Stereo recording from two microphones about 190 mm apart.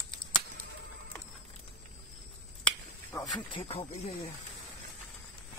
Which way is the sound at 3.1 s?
20° left (ahead or behind).